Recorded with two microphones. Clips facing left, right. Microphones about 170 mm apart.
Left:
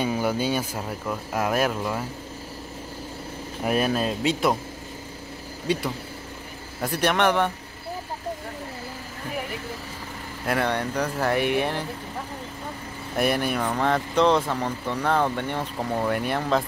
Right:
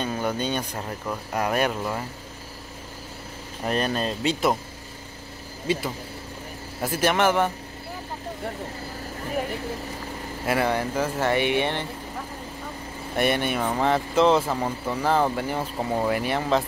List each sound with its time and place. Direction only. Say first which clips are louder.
0.0 s speech: left 2 dB; 10° left (ahead or behind)
3.6 s speech: left 2 dB; 5° left (ahead or behind)
5.7 s speech: even; centre (ahead or behind)
10.4 s speech: right 1 dB; 5° right (ahead or behind)
13.1 s speech: even; centre (ahead or behind)